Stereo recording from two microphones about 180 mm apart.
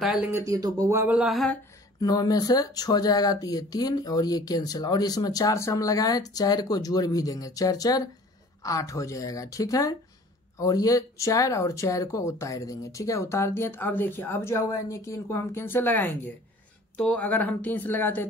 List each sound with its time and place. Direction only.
0.3 s speech: 20° right (ahead or behind); by 1.6 s centre (ahead or behind)
2.0 s speech: 20° left (ahead or behind)